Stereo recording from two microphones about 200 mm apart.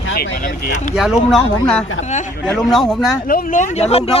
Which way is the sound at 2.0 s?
35° left (ahead or behind).